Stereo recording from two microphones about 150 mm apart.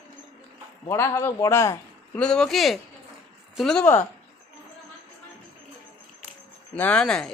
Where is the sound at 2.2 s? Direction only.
5° left (ahead or behind).